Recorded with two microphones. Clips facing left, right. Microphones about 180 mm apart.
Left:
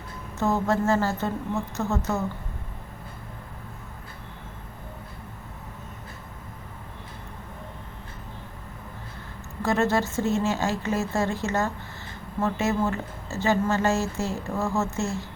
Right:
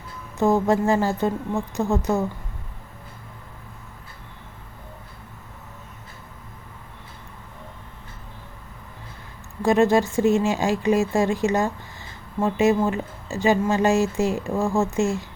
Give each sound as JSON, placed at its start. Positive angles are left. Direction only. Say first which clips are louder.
{"t": 0.3, "sound": "a woman's voice", "louder": "right 5 dB", "side_deg": -15}
{"t": 9.6, "sound": "a woman's voice", "louder": "right 6 dB", "side_deg": -15}